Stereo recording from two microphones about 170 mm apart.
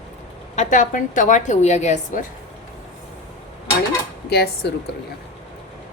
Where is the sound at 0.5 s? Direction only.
45° left (ahead or behind).